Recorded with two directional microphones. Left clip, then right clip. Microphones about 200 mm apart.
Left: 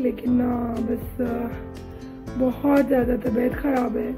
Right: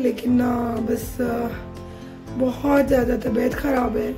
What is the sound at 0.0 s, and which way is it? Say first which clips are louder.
Speech: right 2 dB; 10° right (ahead or behind).